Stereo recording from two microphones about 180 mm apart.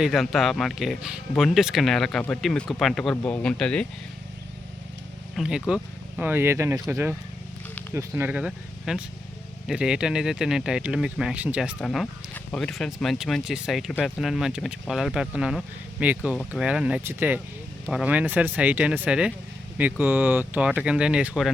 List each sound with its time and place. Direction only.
0.0 s speech: centre (ahead or behind)
5.4 s speech: 5° right (ahead or behind)
11.8 s speech: 5° left (ahead or behind)